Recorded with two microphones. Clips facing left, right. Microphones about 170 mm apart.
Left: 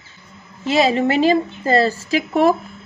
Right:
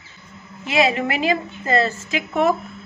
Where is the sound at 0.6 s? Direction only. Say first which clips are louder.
Left 3 dB; 30° left (ahead or behind).